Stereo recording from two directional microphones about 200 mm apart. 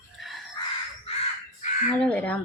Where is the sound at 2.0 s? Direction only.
5° left (ahead or behind).